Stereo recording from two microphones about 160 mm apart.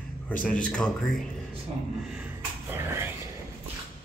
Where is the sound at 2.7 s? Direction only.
15° right (ahead or behind).